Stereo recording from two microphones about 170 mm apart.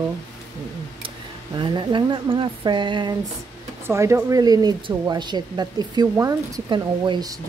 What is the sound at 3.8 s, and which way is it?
Speech, 15° right (ahead or behind).